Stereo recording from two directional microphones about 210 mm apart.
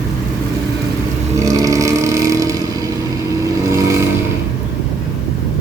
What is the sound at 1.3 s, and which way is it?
Vehicle, 15° right (ahead or behind).